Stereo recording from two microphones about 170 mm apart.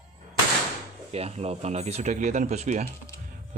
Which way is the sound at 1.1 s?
40° right (ahead or behind).